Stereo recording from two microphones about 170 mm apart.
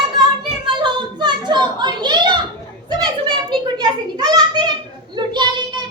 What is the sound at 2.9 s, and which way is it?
Children playing, 25° right (ahead or behind).